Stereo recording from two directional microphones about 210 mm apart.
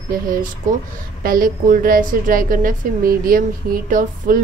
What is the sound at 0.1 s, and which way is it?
A woman's voice, 40° right (ahead or behind).